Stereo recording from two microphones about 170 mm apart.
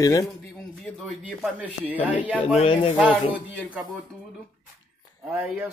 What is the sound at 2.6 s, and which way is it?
Speech, 35° left (ahead or behind).